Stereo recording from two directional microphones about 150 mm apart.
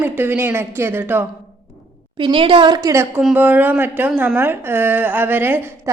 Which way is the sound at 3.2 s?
10° right (ahead or behind).